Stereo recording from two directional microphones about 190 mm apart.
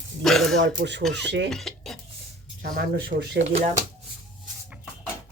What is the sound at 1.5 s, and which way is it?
Dishes, centre (ahead or behind).